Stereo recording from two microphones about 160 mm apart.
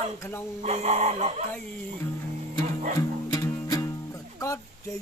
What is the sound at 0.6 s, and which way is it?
Speech, 45° right (ahead or behind).